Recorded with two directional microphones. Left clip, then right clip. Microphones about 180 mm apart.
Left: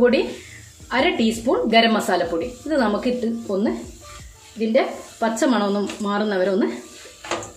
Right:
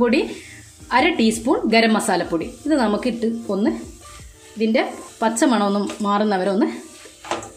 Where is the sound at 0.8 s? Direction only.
45° right (ahead or behind).